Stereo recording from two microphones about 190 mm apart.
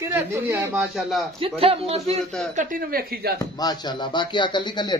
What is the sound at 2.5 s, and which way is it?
Speech, 45° right (ahead or behind).